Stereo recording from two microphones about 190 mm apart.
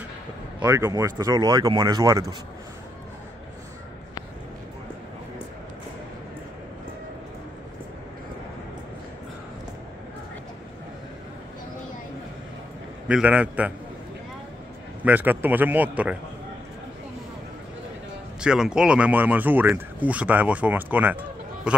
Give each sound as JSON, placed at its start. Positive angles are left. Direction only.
{"t": 0.6, "sound": "speech", "side_deg": -15}
{"t": 13.1, "sound": "speech", "side_deg": -5}
{"t": 15.0, "sound": "speech", "side_deg": -10}
{"t": 18.4, "sound": "a man's voice", "side_deg": -5}